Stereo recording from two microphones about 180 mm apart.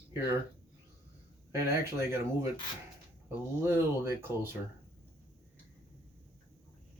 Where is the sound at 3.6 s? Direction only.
15° right (ahead or behind).